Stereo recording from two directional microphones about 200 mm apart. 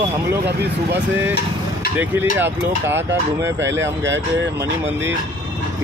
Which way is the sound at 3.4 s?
65° right (ahead or behind).